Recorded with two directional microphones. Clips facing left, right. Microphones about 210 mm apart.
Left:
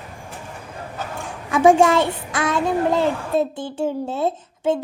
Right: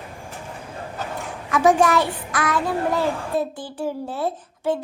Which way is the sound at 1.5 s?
25° left (ahead or behind).